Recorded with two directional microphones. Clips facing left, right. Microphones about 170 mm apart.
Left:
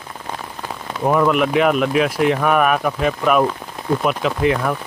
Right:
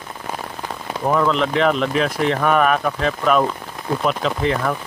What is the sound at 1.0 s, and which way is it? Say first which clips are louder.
Speech: left 2 dB; 10° left (ahead or behind).